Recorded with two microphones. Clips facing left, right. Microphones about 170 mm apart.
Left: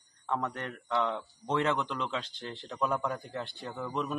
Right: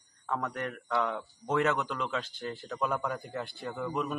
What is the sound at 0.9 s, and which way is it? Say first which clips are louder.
A man's voice: left 1 dB; 5° right (ahead or behind).